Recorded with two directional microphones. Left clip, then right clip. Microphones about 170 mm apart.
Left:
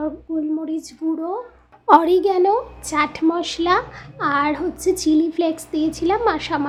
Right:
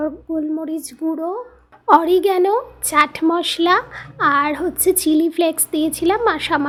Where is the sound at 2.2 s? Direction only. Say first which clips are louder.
Right 1 dB; 25° right (ahead or behind).